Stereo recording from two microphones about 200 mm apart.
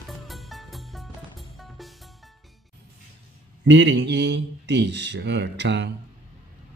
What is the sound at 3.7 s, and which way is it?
Speech, 65° right (ahead or behind).